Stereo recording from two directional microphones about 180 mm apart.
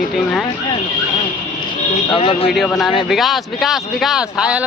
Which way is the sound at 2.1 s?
30° left (ahead or behind).